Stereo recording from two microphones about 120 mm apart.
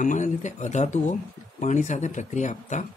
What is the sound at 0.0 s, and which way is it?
Speech, 90° left.